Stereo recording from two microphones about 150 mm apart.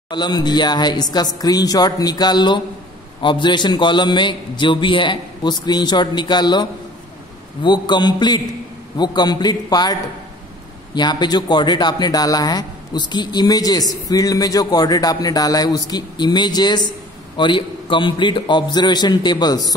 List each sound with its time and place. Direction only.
0.1 s a man's voice: 30° left (ahead or behind)
11.0 s a man's voice: 30° left (ahead or behind)